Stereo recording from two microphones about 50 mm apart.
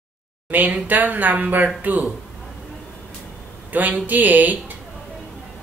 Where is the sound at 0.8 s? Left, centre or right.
Right.